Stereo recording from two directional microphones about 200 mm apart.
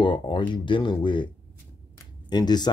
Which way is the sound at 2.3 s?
20° left (ahead or behind).